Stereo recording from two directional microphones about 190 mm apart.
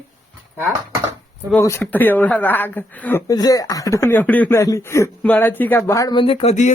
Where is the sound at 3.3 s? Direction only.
20° left (ahead or behind).